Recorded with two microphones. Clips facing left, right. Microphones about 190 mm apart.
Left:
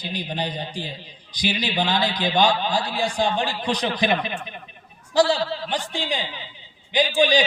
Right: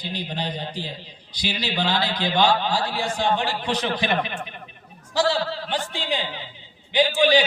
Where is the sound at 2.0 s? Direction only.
50° left (ahead or behind).